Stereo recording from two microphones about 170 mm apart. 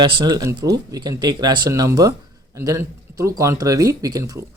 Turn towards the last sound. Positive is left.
turn(degrees=-20)  # may be behind; listen again after turning